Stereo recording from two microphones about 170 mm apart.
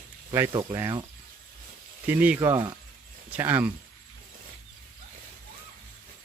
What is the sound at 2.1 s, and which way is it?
Speech, 10° right (ahead or behind).